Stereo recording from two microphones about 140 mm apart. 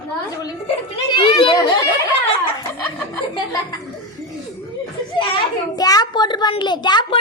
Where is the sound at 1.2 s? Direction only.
35° left (ahead or behind).